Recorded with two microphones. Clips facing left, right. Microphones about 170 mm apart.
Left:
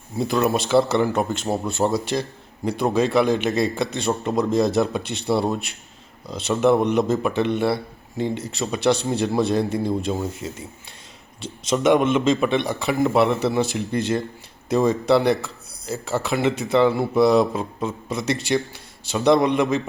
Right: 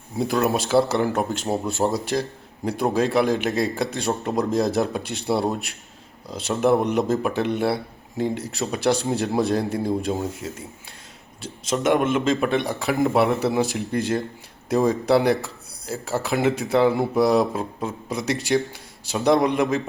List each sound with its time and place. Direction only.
0.2 s speech: 10° right (ahead or behind)